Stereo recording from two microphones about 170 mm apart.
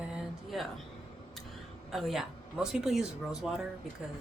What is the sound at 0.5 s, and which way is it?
Speech, centre (ahead or behind).